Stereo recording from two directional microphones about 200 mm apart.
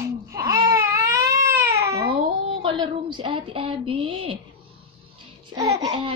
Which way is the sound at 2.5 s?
25° right (ahead or behind).